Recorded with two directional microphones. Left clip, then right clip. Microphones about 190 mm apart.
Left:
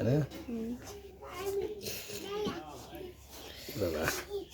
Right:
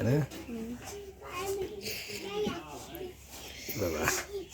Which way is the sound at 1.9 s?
35° left (ahead or behind).